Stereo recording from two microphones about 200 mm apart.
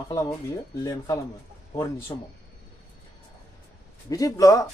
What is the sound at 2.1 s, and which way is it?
Speech, 20° left (ahead or behind).